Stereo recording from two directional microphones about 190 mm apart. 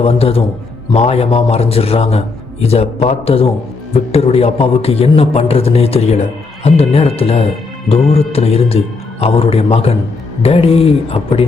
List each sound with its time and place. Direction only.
0.0 s a man's voice: 30° left (ahead or behind)